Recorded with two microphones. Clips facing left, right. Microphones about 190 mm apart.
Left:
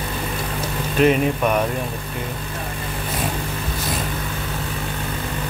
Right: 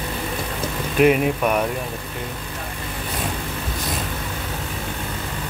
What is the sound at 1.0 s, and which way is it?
Speech, 5° right (ahead or behind).